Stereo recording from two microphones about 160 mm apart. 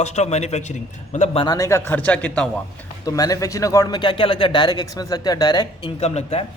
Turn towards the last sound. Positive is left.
turn(degrees=40)  # may be behind; listen again after turning